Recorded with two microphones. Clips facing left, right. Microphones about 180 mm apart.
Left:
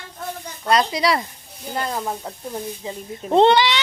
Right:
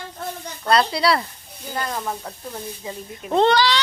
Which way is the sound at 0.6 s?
15° left (ahead or behind).